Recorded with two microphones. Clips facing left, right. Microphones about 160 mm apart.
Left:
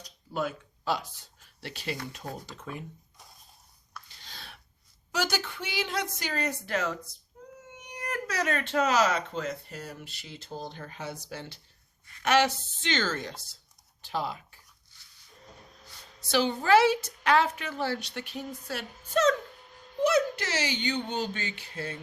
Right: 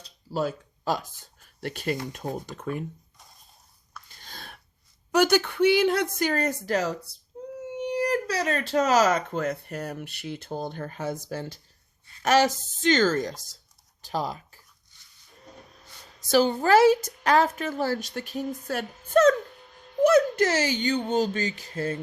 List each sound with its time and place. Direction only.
0.0 s speech: 35° right (ahead or behind); by 2.8 s 55° right (ahead or behind)
4.2 s a sound: 50° right (ahead or behind)
5.1 s speech: 60° right (ahead or behind); by 14.6 s 40° right (ahead or behind)
16.3 s speech: 40° right (ahead or behind)